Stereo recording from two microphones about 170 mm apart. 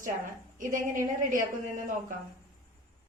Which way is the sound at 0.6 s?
50° right (ahead or behind).